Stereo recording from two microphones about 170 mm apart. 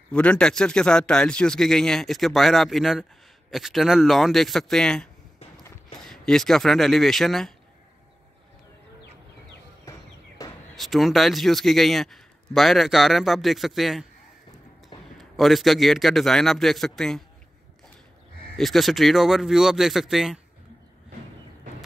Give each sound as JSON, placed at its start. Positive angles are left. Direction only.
{"t": 0.1, "sound": "speech", "side_deg": 5}
{"t": 9.8, "sound": "a sound", "side_deg": 20}
{"t": 10.8, "sound": "speech", "side_deg": 0}
{"t": 15.1, "sound": "speech", "side_deg": 0}
{"t": 18.6, "sound": "speech", "side_deg": 0}